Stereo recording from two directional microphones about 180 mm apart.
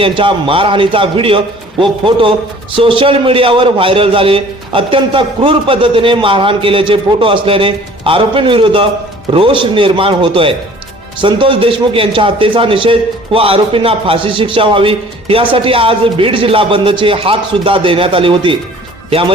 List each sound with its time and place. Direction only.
0.0 s a man's voice: 30° right (ahead or behind)